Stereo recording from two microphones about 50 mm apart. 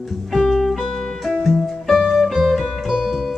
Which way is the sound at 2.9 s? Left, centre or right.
Centre.